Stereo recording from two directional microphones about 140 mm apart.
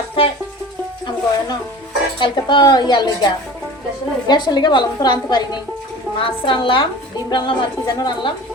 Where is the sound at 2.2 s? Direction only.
35° left (ahead or behind).